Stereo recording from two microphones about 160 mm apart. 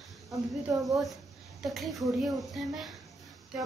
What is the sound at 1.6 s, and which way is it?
A woman's voice, centre (ahead or behind).